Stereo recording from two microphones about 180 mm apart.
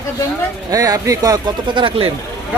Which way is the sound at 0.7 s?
20° right (ahead or behind).